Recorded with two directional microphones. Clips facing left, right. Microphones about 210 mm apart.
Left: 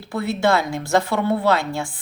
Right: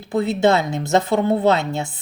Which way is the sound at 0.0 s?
20° right (ahead or behind).